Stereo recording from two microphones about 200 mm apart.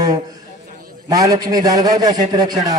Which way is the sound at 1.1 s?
15° right (ahead or behind).